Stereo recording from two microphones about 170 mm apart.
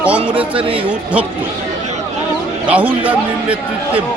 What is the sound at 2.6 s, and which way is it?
Speech, 10° right (ahead or behind).